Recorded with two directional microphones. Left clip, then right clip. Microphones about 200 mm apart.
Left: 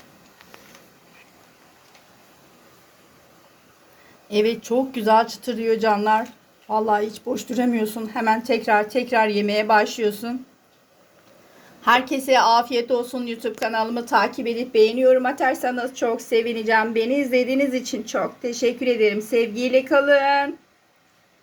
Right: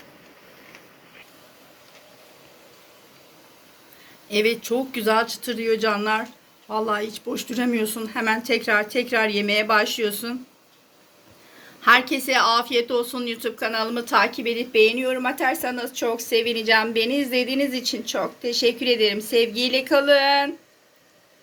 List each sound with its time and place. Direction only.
4.3 s a woman's voice: 25° left (ahead or behind)
11.8 s a woman's voice: 25° left (ahead or behind)